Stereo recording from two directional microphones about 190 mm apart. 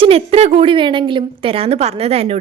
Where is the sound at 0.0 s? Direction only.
30° right (ahead or behind).